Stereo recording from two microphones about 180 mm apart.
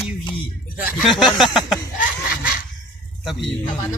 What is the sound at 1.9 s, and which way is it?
Laughter, 50° left (ahead or behind).